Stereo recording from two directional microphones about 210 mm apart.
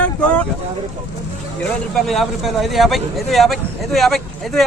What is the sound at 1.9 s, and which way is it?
Speech, centre (ahead or behind).